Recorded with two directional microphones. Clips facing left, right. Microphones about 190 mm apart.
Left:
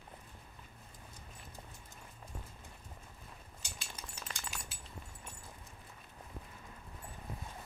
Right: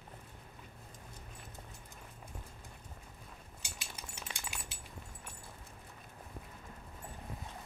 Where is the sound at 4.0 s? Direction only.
10° right (ahead or behind).